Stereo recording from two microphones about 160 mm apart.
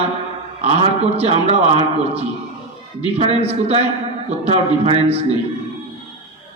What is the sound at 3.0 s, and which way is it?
A man's voice, 40° right (ahead or behind).